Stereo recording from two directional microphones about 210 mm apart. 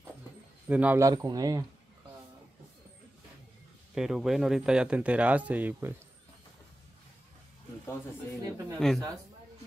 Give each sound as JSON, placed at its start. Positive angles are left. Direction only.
{"t": 0.7, "sound": "speech", "side_deg": -5}
{"t": 3.9, "sound": "speech", "side_deg": -5}
{"t": 8.4, "sound": "speech", "side_deg": -10}
{"t": 8.7, "sound": "speech", "side_deg": 0}